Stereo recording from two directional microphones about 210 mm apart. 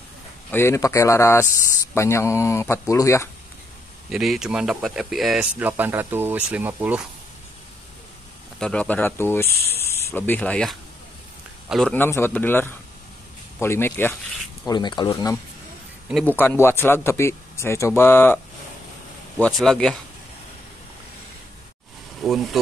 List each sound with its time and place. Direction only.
0.5 s speech: 10° left (ahead or behind)
4.1 s speech: centre (ahead or behind)
8.5 s speech: 5° left (ahead or behind)
14.7 s speech: 20° left (ahead or behind)
19.4 s speech: centre (ahead or behind)
22.2 s speech: centre (ahead or behind)